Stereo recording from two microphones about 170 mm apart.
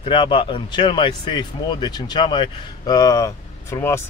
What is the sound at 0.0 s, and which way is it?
Speech, 30° left (ahead or behind).